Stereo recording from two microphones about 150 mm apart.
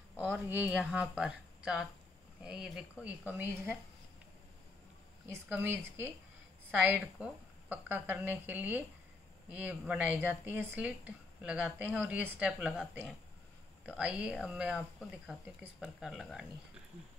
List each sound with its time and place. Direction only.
0.2 s speech: 10° right (ahead or behind)
5.2 s speech: 15° right (ahead or behind)
13.8 s speech: 5° right (ahead or behind)